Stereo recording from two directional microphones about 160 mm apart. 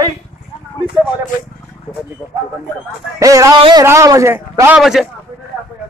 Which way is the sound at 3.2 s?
20° right (ahead or behind).